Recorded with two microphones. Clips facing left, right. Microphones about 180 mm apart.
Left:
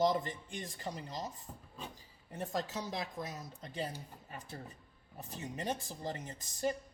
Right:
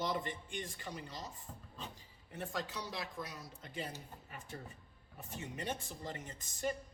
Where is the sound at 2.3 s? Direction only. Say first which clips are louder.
Left 4 dB; 40° left (ahead or behind).